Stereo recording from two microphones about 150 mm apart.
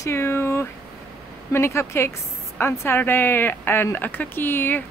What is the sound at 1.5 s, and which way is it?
Speech, 15° left (ahead or behind).